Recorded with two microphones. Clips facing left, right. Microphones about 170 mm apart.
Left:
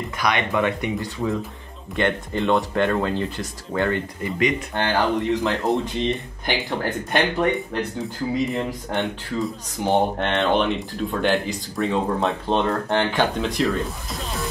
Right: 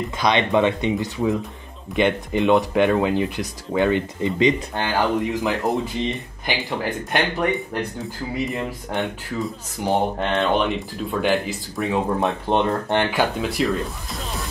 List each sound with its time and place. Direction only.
0.2 s speech: 25° right (ahead or behind)
4.7 s speech: 10° right (ahead or behind)
7.1 s speech: centre (ahead or behind)
12.2 s speech: 15° right (ahead or behind); by 14.2 s centre (ahead or behind)